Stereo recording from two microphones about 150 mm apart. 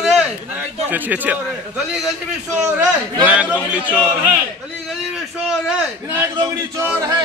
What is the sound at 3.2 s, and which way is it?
Speech, 10° right (ahead or behind).